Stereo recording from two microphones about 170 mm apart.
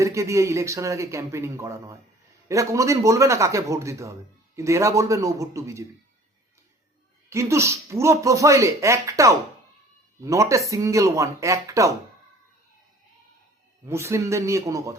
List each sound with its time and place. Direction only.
0.0 s speech: 20° right (ahead or behind)
7.3 s speech: 15° right (ahead or behind)
13.8 s speech: 15° right (ahead or behind)